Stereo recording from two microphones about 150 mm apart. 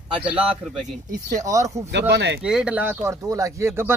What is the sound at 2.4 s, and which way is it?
Speech, 5° right (ahead or behind).